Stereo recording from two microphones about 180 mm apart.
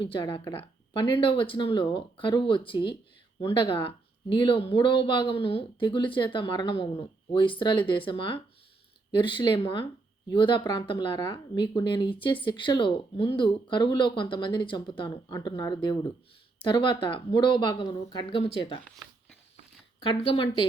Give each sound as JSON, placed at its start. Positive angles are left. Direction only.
{"t": 0.0, "sound": "speech", "side_deg": 25}
{"t": 20.0, "sound": "speech", "side_deg": 30}